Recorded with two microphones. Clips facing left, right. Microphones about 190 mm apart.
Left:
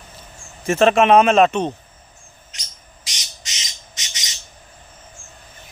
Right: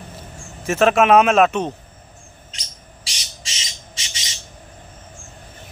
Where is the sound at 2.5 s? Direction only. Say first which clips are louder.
Right 3 dB; 30° right (ahead or behind).